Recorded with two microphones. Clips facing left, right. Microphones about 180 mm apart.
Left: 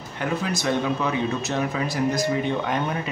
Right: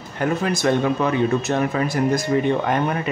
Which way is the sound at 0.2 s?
50° right (ahead or behind).